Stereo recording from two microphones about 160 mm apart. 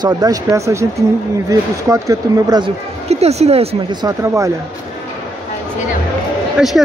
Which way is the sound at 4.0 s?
20° right (ahead or behind).